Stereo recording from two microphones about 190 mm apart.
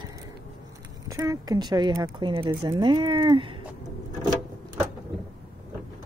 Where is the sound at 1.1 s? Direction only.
20° right (ahead or behind).